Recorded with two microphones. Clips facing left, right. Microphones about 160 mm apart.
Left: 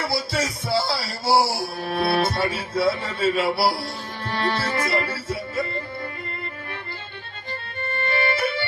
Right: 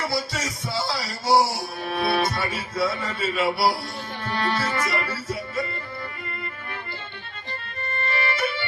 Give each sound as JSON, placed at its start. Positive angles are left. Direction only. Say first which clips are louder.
{"t": 0.1, "sound": "music", "louder": "left 3 dB", "side_deg": 30}
{"t": 3.3, "sound": "speech", "louder": "right 3 dB", "side_deg": 30}
{"t": 4.2, "sound": "music", "louder": "left 1 dB", "side_deg": 30}
{"t": 7.8, "sound": "music", "louder": "left 3 dB", "side_deg": -30}
{"t": 8.1, "sound": "music", "louder": "left 3 dB", "side_deg": 30}